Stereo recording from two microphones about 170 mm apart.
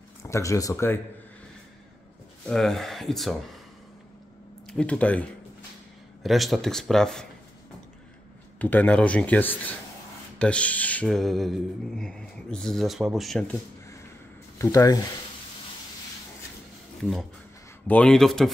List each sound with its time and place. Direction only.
0.2 s speech: 20° left (ahead or behind)
2.4 s speech: 5° left (ahead or behind)
4.6 s a man's voice: 5° left (ahead or behind)
8.5 s a man's voice: 10° left (ahead or behind)
14.6 s speech: 20° left (ahead or behind)
17.8 s speech: 5° left (ahead or behind)